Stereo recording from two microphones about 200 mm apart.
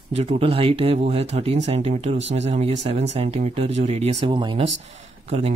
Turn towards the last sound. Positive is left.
turn(degrees=-30)  # may be behind; listen again after turning